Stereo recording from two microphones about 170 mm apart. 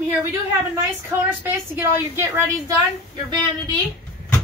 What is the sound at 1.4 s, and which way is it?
A woman's voice, 15° right (ahead or behind).